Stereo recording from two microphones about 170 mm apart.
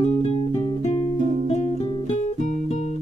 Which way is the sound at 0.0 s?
40° left (ahead or behind).